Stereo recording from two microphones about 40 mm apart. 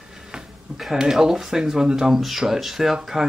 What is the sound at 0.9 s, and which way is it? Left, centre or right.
Speech, centre.